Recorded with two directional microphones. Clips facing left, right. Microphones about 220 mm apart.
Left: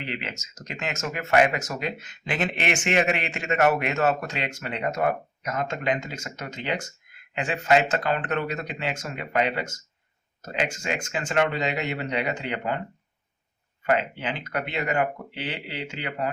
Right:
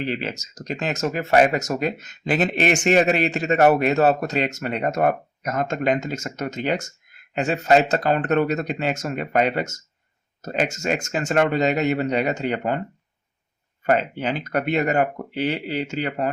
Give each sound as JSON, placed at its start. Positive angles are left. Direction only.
{"t": 0.0, "sound": "speech", "side_deg": -35}
{"t": 13.8, "sound": "speech", "side_deg": -40}